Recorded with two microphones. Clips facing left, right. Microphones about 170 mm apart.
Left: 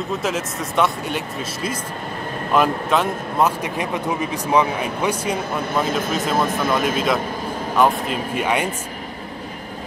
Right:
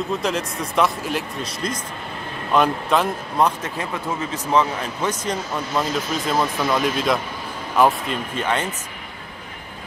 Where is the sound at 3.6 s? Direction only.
15° left (ahead or behind).